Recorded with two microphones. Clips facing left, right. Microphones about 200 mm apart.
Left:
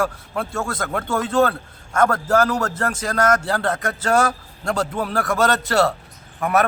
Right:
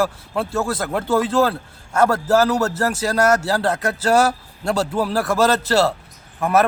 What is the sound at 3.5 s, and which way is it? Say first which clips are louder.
Speech: right 2 dB; 30° right (ahead or behind).